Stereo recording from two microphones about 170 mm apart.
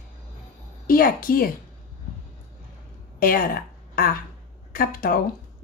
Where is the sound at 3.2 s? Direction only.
60° left (ahead or behind).